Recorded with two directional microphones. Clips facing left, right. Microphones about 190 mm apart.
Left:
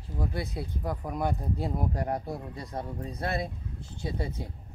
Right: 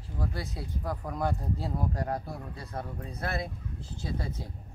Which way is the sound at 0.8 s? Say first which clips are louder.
Left 1 dB; 20° left (ahead or behind).